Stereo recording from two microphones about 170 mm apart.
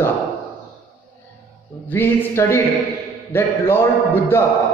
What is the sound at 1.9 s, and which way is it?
A man's voice, 10° left (ahead or behind).